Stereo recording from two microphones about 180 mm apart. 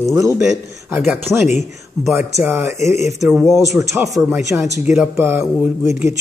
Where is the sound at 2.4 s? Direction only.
10° right (ahead or behind).